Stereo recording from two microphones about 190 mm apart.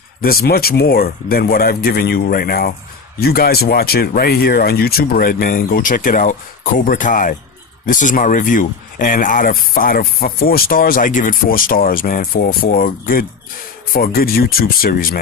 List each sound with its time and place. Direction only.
0.2 s speech: 50° left (ahead or behind)